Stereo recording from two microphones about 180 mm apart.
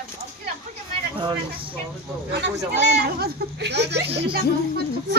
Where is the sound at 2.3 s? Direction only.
70° right (ahead or behind).